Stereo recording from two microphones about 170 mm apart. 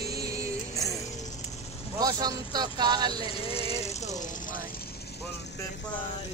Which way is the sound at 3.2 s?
35° left (ahead or behind).